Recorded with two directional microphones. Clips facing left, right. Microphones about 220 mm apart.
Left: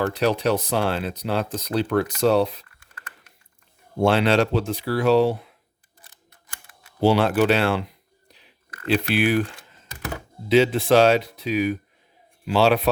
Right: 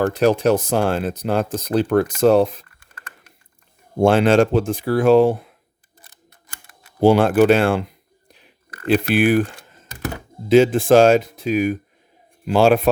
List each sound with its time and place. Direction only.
0.0 s speech: 50° right (ahead or behind)
7.0 s a sound: 50° right (ahead or behind)
10.5 s speech: 50° right (ahead or behind)